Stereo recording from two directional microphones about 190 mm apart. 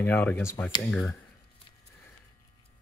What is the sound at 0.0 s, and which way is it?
Speech, 10° left (ahead or behind).